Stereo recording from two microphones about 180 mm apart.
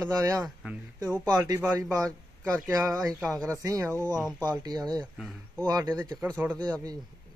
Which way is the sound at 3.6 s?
20° right (ahead or behind).